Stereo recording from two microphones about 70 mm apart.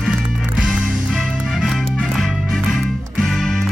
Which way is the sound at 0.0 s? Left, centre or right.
Centre.